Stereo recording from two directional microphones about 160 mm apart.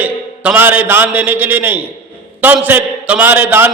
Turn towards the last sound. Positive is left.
turn(degrees=-10)  # may be behind; listen again after turning